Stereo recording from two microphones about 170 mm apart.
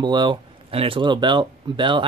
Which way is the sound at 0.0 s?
25° right (ahead or behind).